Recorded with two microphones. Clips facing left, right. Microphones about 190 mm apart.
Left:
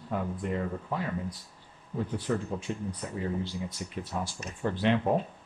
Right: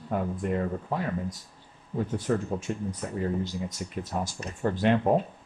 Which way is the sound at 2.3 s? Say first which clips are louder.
Right 3 dB; 50° right (ahead or behind).